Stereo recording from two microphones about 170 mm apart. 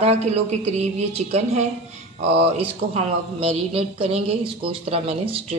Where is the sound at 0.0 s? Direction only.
40° right (ahead or behind).